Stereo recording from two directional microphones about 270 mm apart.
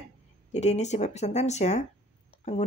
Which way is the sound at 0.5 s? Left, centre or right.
Left.